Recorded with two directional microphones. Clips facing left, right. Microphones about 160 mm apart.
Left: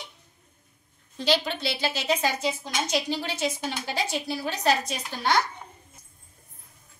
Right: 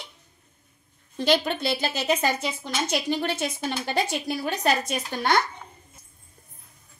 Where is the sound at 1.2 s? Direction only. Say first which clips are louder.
Right 3 dB; 55° right (ahead or behind).